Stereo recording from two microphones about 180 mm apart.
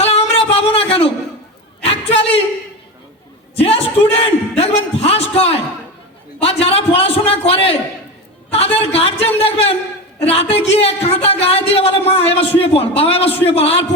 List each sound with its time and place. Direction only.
0.0 s music: 35° left (ahead or behind)
1.8 s a sound: 35° left (ahead or behind)
3.5 s a man's voice: 35° left (ahead or behind)